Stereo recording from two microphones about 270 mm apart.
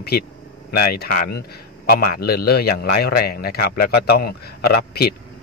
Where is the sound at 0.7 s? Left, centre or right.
Left.